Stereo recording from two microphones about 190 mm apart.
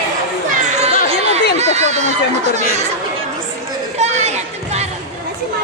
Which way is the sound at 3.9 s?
35° right (ahead or behind).